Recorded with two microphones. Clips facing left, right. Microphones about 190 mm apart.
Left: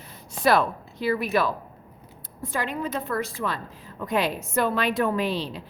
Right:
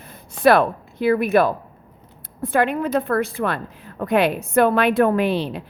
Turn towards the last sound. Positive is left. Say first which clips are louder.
# right 6 dB
turn(degrees=-60)  # may be behind; listen again after turning